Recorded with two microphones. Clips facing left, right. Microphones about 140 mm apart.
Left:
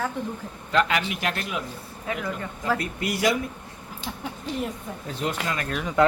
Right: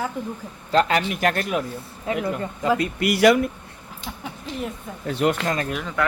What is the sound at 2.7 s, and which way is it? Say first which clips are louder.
Speech: right 6 dB; 75° right (ahead or behind).